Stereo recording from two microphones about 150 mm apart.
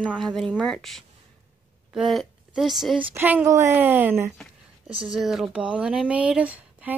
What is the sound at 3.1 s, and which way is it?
Speech, 15° right (ahead or behind).